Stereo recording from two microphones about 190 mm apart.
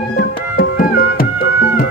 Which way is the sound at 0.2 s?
50° left (ahead or behind).